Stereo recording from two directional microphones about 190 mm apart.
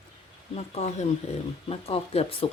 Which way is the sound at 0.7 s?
35° left (ahead or behind).